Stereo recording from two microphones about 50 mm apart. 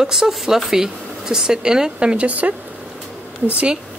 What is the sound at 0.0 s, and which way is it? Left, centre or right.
Speech, centre.